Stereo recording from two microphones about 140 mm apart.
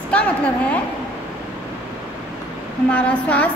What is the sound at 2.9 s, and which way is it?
Speech, 10° left (ahead or behind).